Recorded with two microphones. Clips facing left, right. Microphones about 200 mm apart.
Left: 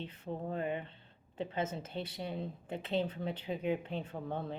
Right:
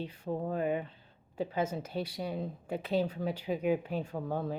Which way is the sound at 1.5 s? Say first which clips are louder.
Right 3 dB; 25° left (ahead or behind).